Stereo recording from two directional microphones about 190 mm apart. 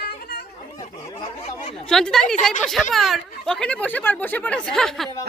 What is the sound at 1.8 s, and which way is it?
A woman's voice, 5° left (ahead or behind).